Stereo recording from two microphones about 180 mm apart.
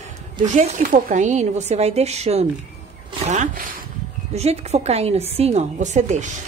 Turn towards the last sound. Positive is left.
turn(degrees=-40)  # may be behind; listen again after turning